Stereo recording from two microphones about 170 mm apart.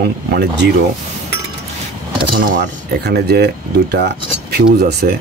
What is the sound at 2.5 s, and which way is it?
Speech, 85° right.